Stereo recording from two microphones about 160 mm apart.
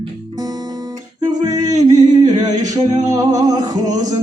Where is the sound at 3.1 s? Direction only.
25° right (ahead or behind).